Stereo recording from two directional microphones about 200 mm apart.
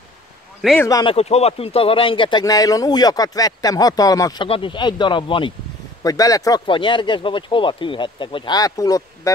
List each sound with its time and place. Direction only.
0.6 s speech: centre (ahead or behind)
0.8 s speech: 15° left (ahead or behind)
1.1 s speech: 30° left (ahead or behind); by 9.3 s 15° left (ahead or behind)